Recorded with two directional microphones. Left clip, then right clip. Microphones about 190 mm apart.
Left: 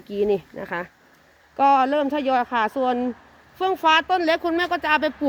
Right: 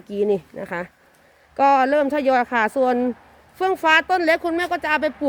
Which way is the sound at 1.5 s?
20° right (ahead or behind).